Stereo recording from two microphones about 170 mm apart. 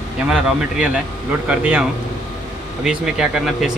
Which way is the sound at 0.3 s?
5° right (ahead or behind).